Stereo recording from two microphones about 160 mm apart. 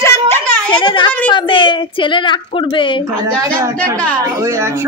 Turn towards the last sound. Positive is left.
turn(degrees=-20)  # may be behind; listen again after turning